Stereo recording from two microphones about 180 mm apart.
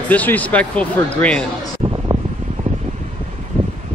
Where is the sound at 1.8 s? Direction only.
25° right (ahead or behind).